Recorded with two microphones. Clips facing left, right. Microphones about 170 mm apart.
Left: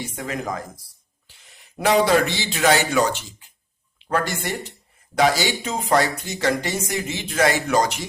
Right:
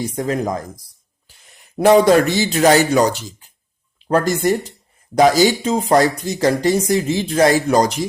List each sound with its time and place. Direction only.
0.0 s speech: 40° right (ahead or behind)
1.8 s speech: 45° right (ahead or behind)